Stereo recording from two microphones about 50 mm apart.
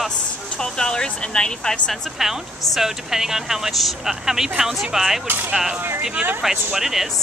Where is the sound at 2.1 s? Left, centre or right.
Centre.